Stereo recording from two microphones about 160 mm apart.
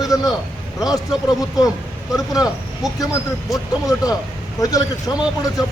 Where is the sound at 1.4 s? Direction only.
20° left (ahead or behind).